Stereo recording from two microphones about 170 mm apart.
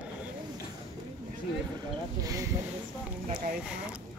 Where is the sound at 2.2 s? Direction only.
20° right (ahead or behind).